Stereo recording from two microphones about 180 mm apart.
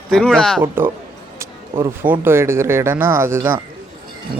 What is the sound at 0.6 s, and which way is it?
Speech, 10° right (ahead or behind).